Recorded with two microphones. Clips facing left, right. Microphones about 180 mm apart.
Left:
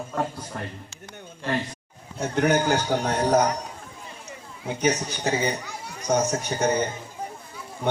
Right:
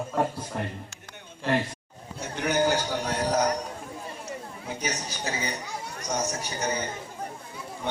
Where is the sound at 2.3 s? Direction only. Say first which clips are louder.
Left 3 dB; 55° left (ahead or behind).